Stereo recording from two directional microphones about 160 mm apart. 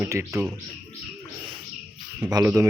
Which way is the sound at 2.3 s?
15° right (ahead or behind).